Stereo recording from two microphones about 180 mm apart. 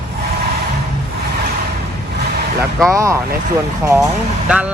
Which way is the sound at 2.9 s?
15° right (ahead or behind).